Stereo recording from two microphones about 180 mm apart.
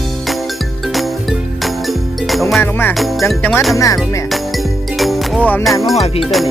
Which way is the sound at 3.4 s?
10° left (ahead or behind).